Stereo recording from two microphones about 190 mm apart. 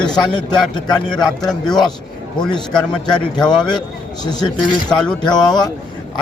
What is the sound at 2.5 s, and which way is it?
Speech, 20° left (ahead or behind).